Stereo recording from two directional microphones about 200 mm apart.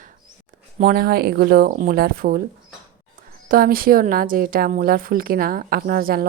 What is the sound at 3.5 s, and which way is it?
Speech, 45° right (ahead or behind).